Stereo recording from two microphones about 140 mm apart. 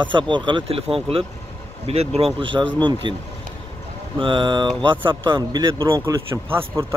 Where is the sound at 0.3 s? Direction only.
35° right (ahead or behind).